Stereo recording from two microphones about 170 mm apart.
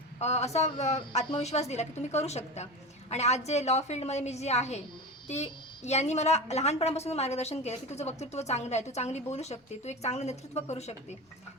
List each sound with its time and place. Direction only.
0.2 s a woman's voice: 40° left (ahead or behind)